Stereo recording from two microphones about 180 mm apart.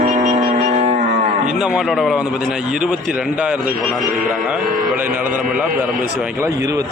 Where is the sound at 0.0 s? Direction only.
45° right (ahead or behind).